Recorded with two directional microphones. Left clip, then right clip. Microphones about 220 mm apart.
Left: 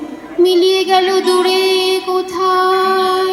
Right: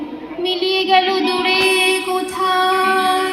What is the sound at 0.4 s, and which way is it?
Music, 45° left (ahead or behind).